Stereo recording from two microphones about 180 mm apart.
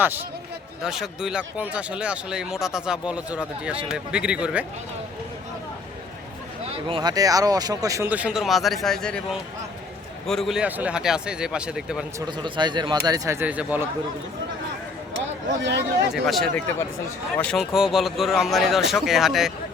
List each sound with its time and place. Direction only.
0.8 s speech: 5° right (ahead or behind)
6.8 s speech: 25° right (ahead or behind); by 12.0 s 5° right (ahead or behind)
12.2 s speech: 25° right (ahead or behind); by 13.8 s 10° right (ahead or behind)
15.6 s speech: 70° right (ahead or behind)
16.2 s speech: centre (ahead or behind)